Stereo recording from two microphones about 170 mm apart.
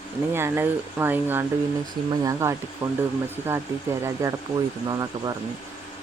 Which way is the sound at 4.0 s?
20° right (ahead or behind).